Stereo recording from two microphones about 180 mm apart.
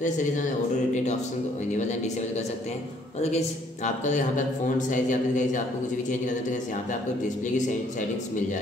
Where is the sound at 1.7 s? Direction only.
40° left (ahead or behind).